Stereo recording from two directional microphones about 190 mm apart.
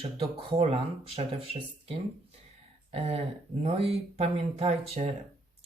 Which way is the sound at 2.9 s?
35° right (ahead or behind).